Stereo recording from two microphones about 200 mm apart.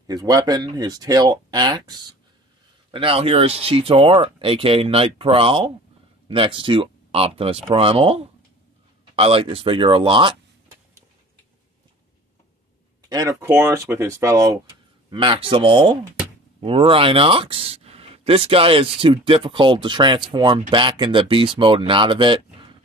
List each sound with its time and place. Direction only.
0.0 s speech: 20° right (ahead or behind)
13.1 s speech: 15° right (ahead or behind)